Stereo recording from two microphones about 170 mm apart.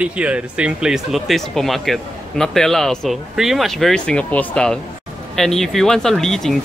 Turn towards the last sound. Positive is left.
turn(degrees=5)  # may be behind; listen again after turning